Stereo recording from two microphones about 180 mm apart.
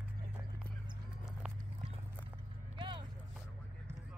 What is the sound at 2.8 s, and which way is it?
Vehicle, 25° right (ahead or behind).